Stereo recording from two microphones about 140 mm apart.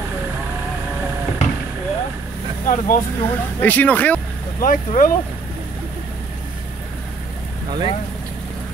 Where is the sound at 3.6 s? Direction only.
10° left (ahead or behind).